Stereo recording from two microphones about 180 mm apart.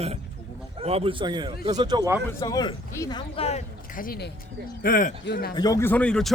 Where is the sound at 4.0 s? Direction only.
60° left (ahead or behind).